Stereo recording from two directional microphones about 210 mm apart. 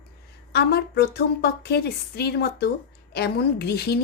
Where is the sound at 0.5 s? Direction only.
50° left (ahead or behind).